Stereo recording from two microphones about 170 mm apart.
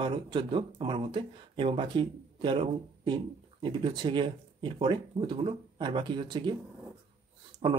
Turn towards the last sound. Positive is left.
turn(degrees=-30)  # may be behind; listen again after turning